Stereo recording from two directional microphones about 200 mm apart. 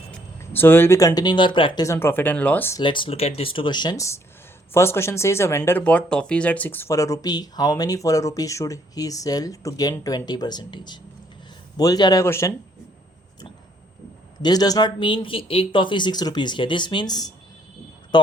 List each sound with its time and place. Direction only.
0.5 s speech: 10° left (ahead or behind)
2.8 s speech: 25° left (ahead or behind)
14.4 s speech: 20° left (ahead or behind)